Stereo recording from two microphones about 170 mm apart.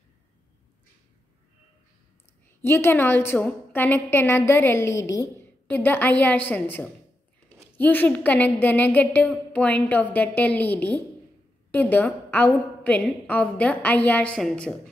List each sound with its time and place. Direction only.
2.6 s a woman's voice: 15° left (ahead or behind)